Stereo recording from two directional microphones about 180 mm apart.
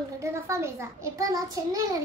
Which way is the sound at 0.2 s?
15° right (ahead or behind).